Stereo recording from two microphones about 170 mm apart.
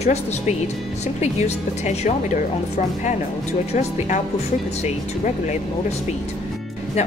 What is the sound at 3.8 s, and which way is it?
Speech, 45° left (ahead or behind).